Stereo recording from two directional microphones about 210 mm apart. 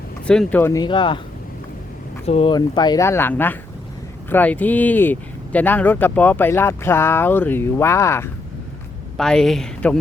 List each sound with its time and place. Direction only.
0.3 s speech: 5° left (ahead or behind); by 1.2 s 20° left (ahead or behind)
2.2 s speech: 30° left (ahead or behind); by 8.3 s 10° left (ahead or behind)
9.1 s speech: centre (ahead or behind)